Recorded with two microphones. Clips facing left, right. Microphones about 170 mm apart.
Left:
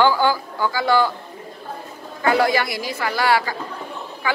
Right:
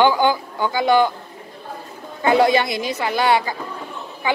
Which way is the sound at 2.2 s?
20° right (ahead or behind).